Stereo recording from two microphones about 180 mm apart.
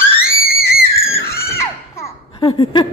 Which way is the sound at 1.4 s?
15° left (ahead or behind).